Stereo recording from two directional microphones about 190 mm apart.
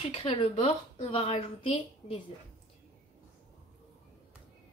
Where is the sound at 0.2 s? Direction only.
30° left (ahead or behind).